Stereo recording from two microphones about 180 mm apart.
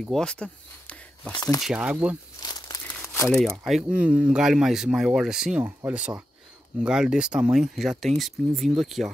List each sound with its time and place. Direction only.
0.0 s speech: 5° left (ahead or behind)
1.6 s speech: 5° right (ahead or behind)
2.4 s crumpling: 20° left (ahead or behind)
3.0 s crumpling: 10° left (ahead or behind)
3.3 s speech: centre (ahead or behind)